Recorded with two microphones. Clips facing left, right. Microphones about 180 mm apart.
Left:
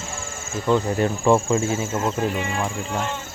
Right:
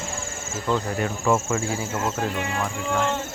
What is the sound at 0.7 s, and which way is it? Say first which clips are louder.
Speech: left 5 dB; 15° left (ahead or behind).